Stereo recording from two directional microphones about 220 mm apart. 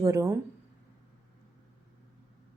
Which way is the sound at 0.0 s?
15° right (ahead or behind).